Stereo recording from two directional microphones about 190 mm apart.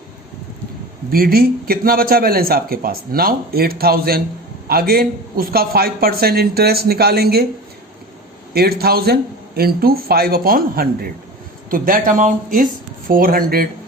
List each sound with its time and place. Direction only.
1.1 s speech: 50° right (ahead or behind)
8.5 s a man's voice: 55° right (ahead or behind)